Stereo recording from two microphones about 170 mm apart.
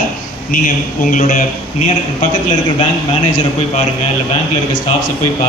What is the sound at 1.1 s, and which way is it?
Speech, 50° left (ahead or behind).